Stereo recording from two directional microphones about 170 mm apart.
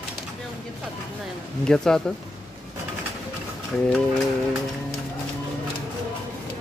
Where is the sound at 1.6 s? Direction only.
5° left (ahead or behind).